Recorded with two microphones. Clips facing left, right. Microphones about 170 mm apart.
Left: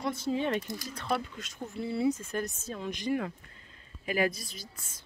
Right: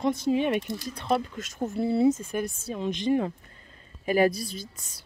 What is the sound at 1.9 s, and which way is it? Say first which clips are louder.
Speech: right 6 dB; 30° right (ahead or behind).